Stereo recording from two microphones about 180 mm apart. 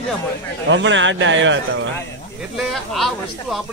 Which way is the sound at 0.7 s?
90° right.